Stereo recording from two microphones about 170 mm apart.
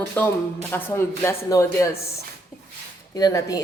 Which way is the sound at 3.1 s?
20° left (ahead or behind).